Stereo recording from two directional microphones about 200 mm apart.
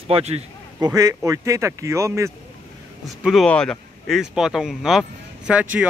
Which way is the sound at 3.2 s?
Centre (ahead or behind).